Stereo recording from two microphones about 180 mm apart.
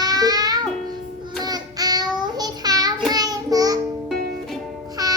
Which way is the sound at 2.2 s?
20° right (ahead or behind).